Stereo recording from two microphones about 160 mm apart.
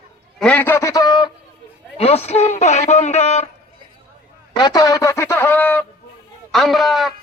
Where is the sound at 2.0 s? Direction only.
40° left (ahead or behind).